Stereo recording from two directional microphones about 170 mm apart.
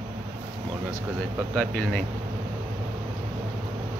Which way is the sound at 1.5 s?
10° left (ahead or behind).